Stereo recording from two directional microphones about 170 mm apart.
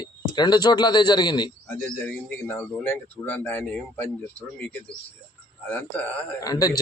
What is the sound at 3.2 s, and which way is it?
Speech, 10° left (ahead or behind).